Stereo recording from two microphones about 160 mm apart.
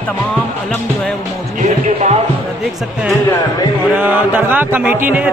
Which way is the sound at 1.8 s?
45° right (ahead or behind).